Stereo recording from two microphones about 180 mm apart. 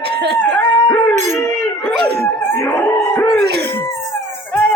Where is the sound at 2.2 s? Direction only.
15° left (ahead or behind).